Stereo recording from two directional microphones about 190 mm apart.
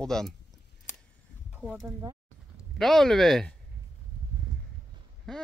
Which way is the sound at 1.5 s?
5° right (ahead or behind).